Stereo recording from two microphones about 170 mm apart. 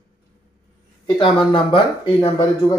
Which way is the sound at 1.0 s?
25° left (ahead or behind).